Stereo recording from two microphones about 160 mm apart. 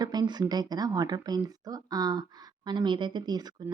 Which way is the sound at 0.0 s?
25° right (ahead or behind).